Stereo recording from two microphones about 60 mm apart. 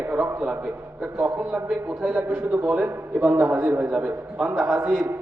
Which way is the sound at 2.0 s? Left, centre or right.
Centre.